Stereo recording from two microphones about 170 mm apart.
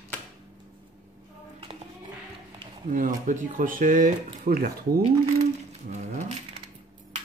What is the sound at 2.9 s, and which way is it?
Speech, 50° right (ahead or behind).